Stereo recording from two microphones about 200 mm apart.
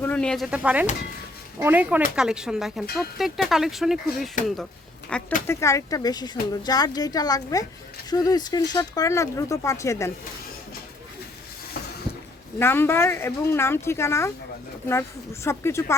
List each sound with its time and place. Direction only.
0.0 s speech: 5° left (ahead or behind)
12.5 s speech: 10° left (ahead or behind)